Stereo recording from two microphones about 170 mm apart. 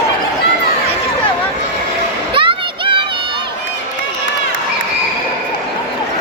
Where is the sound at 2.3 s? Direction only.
30° right (ahead or behind).